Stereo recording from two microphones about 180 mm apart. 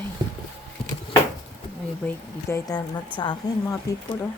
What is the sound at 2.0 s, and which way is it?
Speech, 15° left (ahead or behind).